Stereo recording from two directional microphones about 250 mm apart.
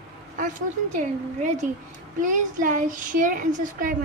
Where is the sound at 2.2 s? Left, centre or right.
Right.